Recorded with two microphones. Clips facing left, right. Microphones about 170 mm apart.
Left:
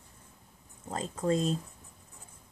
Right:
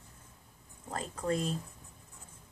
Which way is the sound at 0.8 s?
25° left (ahead or behind).